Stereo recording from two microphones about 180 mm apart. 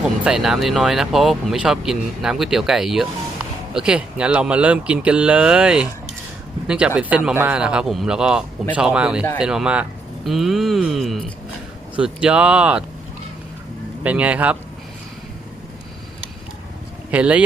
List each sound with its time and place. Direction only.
0.3 s speech: centre (ahead or behind)
14.0 s speech: 5° right (ahead or behind)
17.1 s speech: 5° right (ahead or behind)